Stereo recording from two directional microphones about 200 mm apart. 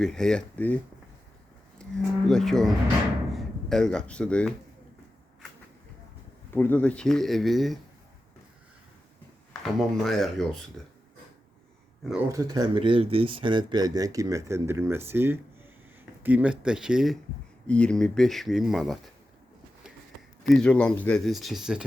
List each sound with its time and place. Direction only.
0.0 s speech: 5° left (ahead or behind)
1.8 s speech: centre (ahead or behind)
6.5 s speech: 10° left (ahead or behind)
9.5 s speech: centre (ahead or behind)
12.3 s speech: 15° right (ahead or behind); by 18.9 s centre (ahead or behind)
20.5 s speech: 5° left (ahead or behind)